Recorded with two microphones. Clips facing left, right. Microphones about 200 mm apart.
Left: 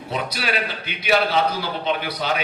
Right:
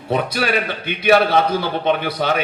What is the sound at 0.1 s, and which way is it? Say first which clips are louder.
A man's voice: right 7 dB; 55° right (ahead or behind).